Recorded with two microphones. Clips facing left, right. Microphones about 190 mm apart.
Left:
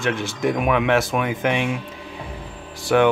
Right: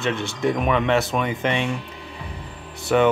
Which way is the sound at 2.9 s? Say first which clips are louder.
Left 1 dB; 5° left (ahead or behind).